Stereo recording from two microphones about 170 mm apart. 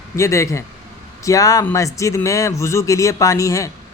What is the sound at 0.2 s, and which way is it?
Speech, 15° left (ahead or behind).